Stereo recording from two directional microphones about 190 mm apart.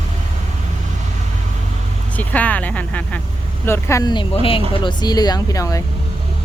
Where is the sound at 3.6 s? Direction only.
15° left (ahead or behind).